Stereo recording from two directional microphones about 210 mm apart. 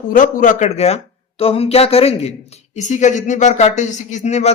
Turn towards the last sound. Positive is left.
turn(degrees=30)  # may be behind; listen again after turning